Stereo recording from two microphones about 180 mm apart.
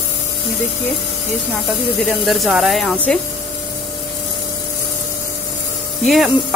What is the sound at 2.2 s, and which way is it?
Speech, centre (ahead or behind).